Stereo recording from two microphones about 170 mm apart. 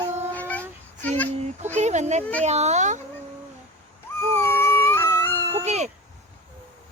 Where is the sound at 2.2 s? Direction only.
10° left (ahead or behind).